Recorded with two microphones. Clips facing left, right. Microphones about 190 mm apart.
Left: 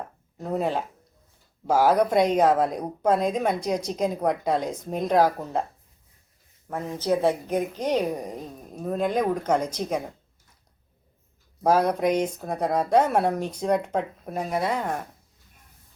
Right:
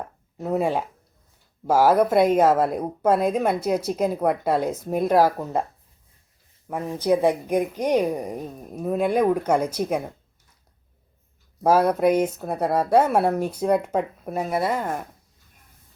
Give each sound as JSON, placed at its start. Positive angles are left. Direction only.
{"t": 0.3, "sound": "speech", "side_deg": -5}
{"t": 6.9, "sound": "speech", "side_deg": -15}
{"t": 11.6, "sound": "speech", "side_deg": -5}